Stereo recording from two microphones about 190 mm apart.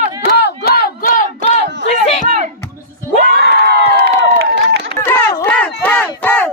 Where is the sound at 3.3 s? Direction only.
55° right (ahead or behind).